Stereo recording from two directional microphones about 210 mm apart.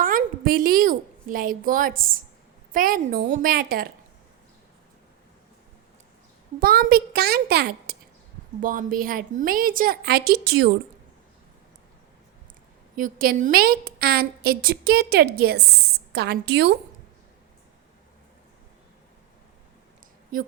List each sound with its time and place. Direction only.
0.0 s a woman's voice: 45° right (ahead or behind)
6.6 s a woman's voice: 45° right (ahead or behind)
13.0 s a woman's voice: 40° right (ahead or behind)